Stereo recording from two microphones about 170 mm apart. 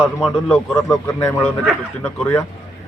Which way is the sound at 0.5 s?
15° left (ahead or behind).